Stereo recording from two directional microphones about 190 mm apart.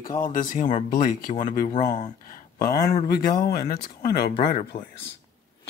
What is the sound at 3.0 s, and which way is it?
Speech, 60° left (ahead or behind).